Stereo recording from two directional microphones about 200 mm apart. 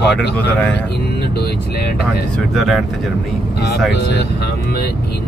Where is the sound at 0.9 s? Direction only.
55° left (ahead or behind).